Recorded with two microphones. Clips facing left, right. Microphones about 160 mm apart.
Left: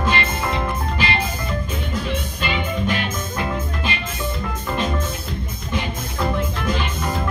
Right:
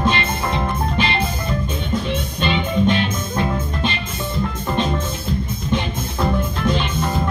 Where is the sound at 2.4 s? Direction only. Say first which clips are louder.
Right 6 dB; 25° right (ahead or behind).